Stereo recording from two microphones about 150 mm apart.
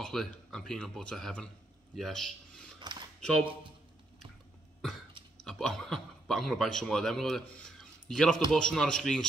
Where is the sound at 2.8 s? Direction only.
30° right (ahead or behind).